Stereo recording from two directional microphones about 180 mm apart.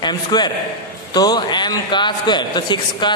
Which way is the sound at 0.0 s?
25° left (ahead or behind).